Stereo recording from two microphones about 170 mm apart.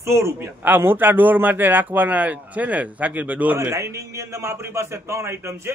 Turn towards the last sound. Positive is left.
turn(degrees=-15)  # may be behind; listen again after turning